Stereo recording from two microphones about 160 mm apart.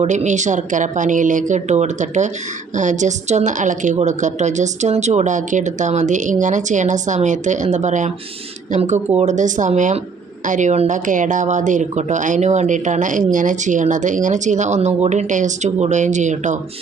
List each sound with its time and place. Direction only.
0.0 s speech: 45° right (ahead or behind)